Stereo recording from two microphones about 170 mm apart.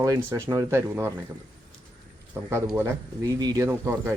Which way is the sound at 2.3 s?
15° right (ahead or behind).